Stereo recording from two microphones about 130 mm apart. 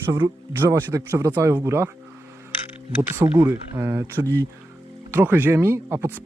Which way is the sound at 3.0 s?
15° right (ahead or behind).